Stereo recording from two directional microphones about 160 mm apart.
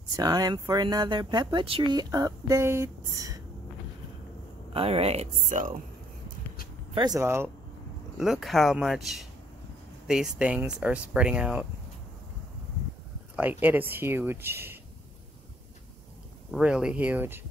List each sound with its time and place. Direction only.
0.1 s speech: 25° right (ahead or behind)
4.7 s speech: 35° right (ahead or behind); by 5.8 s 50° right (ahead or behind)
6.9 s speech: 25° right (ahead or behind)
8.2 s speech: centre (ahead or behind)
13.4 s speech: 10° right (ahead or behind)
16.5 s speech: 5° right (ahead or behind)